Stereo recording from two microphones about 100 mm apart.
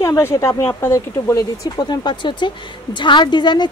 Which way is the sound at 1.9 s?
50° left (ahead or behind).